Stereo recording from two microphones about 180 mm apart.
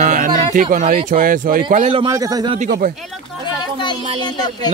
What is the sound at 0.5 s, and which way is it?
Speech, 45° right (ahead or behind).